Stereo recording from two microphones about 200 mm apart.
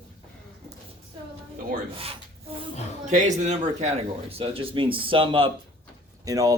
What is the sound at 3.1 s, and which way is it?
Speech, 35° right (ahead or behind).